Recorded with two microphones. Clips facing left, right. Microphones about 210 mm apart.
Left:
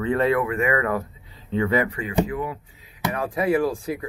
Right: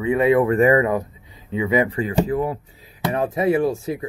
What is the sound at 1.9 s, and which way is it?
Speech, 30° right (ahead or behind).